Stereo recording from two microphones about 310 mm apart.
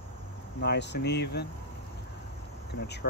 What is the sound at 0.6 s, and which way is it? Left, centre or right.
Speech, left.